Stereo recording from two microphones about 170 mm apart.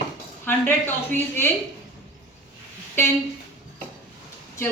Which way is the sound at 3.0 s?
15° left (ahead or behind).